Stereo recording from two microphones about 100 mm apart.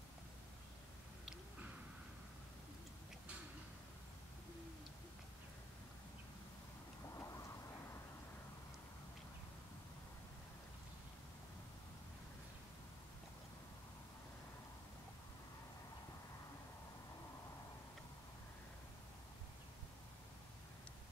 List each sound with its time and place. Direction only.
7.2 s vehicle: 30° left (ahead or behind)